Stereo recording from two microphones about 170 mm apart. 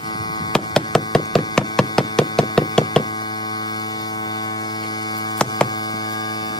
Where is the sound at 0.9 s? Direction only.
Centre (ahead or behind).